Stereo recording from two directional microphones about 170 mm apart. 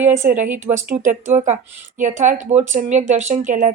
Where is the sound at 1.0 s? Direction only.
45° right (ahead or behind).